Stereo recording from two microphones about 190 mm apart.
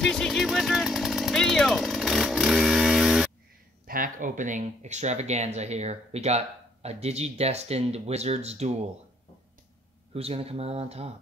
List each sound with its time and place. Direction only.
0.0 s chainsaw: centre (ahead or behind)
3.8 s speech: 45° right (ahead or behind)
10.1 s speech: 30° right (ahead or behind)